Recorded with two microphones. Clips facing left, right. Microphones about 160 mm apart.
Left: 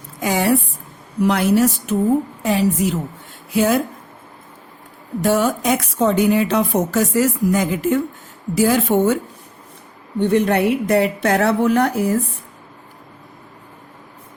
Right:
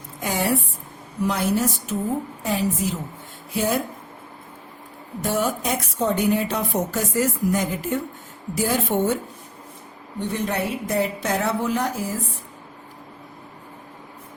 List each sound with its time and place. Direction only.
0.2 s a sound: 90° left
1.2 s a woman's voice: 75° left (ahead or behind)
3.5 s a woman's voice: 90° left
5.2 s a woman's voice: 90° left
10.2 s a woman's voice: 65° left (ahead or behind)